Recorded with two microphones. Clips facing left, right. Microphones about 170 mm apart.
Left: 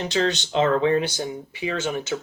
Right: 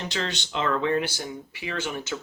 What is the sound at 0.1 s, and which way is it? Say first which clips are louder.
Speech: left 8 dB; 25° left (ahead or behind).